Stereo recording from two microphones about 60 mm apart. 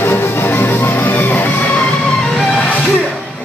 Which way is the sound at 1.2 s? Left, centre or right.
Left.